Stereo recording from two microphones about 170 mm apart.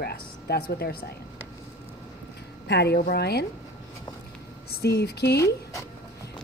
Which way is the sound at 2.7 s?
80° left.